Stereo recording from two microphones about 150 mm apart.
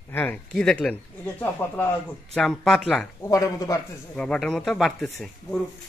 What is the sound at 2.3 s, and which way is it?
Speech, 5° left (ahead or behind).